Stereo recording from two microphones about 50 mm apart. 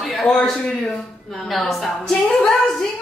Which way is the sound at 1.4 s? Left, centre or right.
Centre.